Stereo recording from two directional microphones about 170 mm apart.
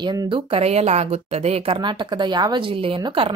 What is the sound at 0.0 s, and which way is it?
Speech, 25° right (ahead or behind).